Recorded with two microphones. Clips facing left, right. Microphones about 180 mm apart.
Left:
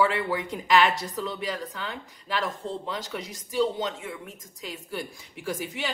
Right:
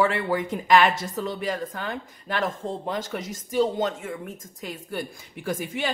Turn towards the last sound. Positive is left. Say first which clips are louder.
# right 3 dB
turn(degrees=-50)  # may be behind; listen again after turning